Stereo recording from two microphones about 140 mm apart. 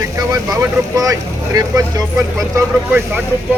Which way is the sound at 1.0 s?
25° right (ahead or behind).